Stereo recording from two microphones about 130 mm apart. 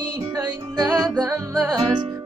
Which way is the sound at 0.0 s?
35° right (ahead or behind).